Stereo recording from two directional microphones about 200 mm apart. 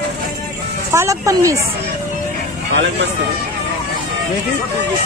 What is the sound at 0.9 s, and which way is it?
Speech, 15° right (ahead or behind).